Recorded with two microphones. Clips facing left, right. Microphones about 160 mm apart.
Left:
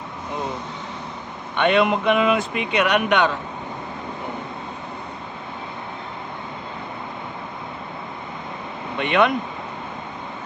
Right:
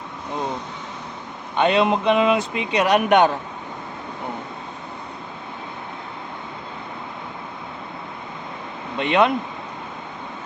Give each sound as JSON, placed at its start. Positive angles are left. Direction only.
{"t": 1.6, "sound": "speech", "side_deg": -30}
{"t": 9.0, "sound": "speech", "side_deg": -30}